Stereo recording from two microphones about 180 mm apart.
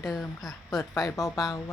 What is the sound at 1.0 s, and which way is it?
Speech, 20° left (ahead or behind).